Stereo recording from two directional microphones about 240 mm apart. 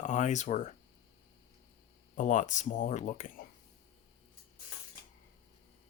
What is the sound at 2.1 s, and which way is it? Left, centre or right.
Speech, left.